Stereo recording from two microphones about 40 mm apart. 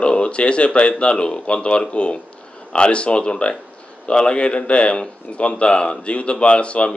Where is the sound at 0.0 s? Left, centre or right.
Left.